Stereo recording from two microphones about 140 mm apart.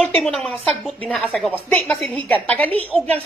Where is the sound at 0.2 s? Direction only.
Centre (ahead or behind).